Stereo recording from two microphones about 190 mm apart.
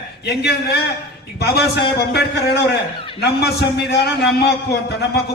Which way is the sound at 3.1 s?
60° left (ahead or behind).